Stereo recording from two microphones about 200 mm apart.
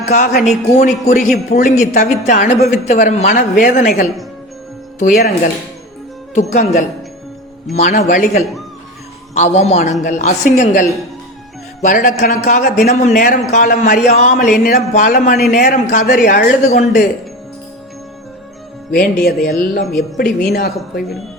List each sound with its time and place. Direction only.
0.0 s a man's voice: 40° left (ahead or behind)
7.7 s a man's voice: 35° left (ahead or behind)
18.9 s a man's voice: 50° left (ahead or behind)